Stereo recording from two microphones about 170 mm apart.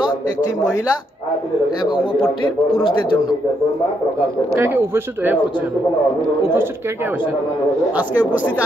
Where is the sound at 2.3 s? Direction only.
30° left (ahead or behind).